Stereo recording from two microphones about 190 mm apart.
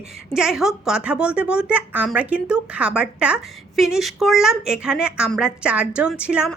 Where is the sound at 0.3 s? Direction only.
5° right (ahead or behind).